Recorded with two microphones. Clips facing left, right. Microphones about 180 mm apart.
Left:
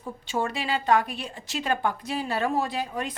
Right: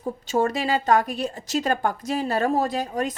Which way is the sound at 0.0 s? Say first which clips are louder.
Right 6 dB; 40° right (ahead or behind).